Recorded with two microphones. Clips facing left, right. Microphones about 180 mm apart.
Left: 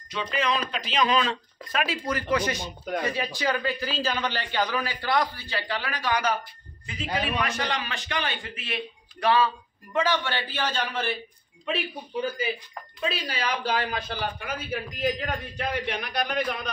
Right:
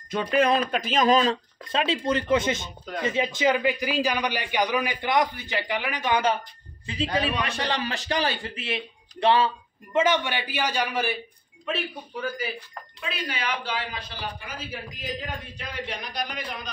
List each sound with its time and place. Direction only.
0.1 s speech: 50° right (ahead or behind)
1.7 s a man's voice: 25° right (ahead or behind); by 11.1 s 10° right (ahead or behind)
12.2 s speech: 20° left (ahead or behind)
13.0 s a man's voice: 35° left (ahead or behind); by 16.7 s 60° left (ahead or behind)